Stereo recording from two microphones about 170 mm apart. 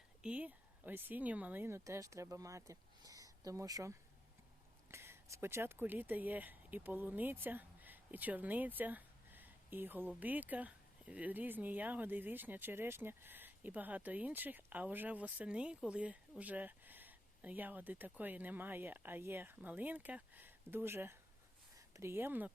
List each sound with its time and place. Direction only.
0.2 s speech: 5° right (ahead or behind)